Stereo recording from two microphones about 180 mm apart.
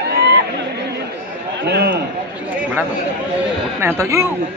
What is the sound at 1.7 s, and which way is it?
Speech, 65° right (ahead or behind).